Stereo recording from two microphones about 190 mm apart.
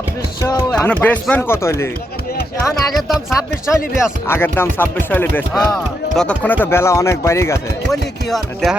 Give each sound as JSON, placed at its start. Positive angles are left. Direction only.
{"t": 0.4, "sound": "speech", "side_deg": 20}
{"t": 2.9, "sound": "speech", "side_deg": 0}
{"t": 4.3, "sound": "speech", "side_deg": 10}
{"t": 7.9, "sound": "speech", "side_deg": 0}